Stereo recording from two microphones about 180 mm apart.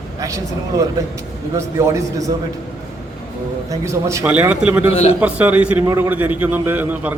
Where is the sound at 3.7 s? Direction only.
15° right (ahead or behind).